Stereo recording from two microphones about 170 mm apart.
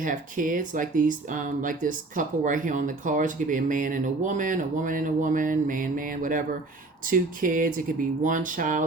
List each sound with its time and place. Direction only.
0.0 s speech: 50° right (ahead or behind)